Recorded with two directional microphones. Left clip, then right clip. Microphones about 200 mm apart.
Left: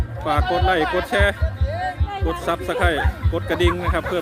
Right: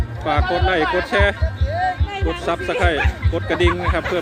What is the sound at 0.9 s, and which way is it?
Speech, 10° left (ahead or behind).